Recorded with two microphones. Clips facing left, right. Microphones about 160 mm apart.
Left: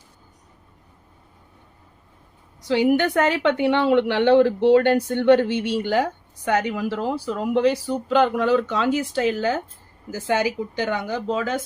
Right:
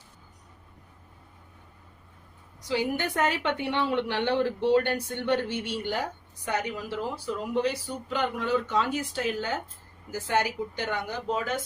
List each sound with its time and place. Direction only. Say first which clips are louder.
2.6 s a woman's voice: left 10 dB; 80° left